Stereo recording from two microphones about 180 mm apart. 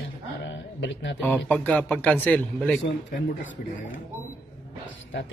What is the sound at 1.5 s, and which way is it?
A man's voice, 10° left (ahead or behind).